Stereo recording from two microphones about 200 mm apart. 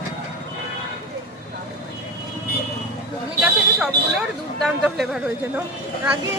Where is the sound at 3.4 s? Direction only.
5° right (ahead or behind).